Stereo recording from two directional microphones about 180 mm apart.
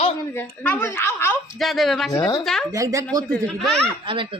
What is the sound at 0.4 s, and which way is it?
Speech, 5° left (ahead or behind).